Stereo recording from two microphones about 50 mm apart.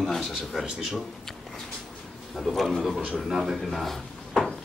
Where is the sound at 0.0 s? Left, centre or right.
Centre.